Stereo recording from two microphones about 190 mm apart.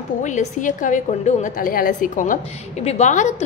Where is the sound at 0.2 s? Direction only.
40° left (ahead or behind).